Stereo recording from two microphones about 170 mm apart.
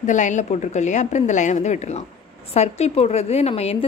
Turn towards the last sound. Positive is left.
turn(degrees=35)  # may be behind; listen again after turning